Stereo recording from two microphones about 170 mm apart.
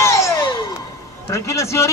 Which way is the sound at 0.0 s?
15° left (ahead or behind).